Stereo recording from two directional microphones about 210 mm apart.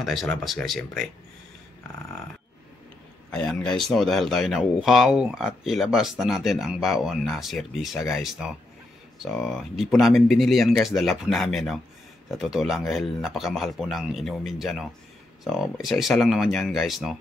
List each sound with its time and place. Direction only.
0.0 s speech: centre (ahead or behind)
3.3 s speech: 5° left (ahead or behind)